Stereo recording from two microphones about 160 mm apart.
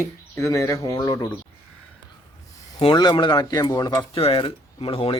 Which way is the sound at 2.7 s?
30° left (ahead or behind).